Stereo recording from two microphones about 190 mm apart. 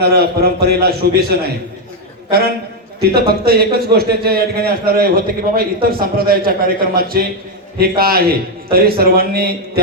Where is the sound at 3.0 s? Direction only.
55° right (ahead or behind).